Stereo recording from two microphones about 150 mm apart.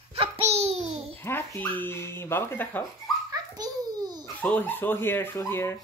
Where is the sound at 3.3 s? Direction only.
25° right (ahead or behind).